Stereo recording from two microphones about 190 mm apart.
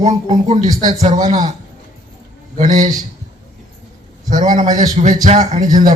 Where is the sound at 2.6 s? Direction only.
40° right (ahead or behind).